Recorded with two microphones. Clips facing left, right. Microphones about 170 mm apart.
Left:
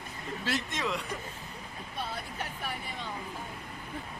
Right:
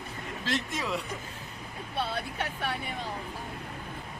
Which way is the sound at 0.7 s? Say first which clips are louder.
Right 1 dB; 5° right (ahead or behind).